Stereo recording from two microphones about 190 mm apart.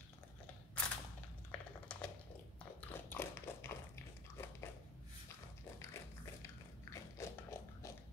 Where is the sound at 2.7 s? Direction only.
10° left (ahead or behind).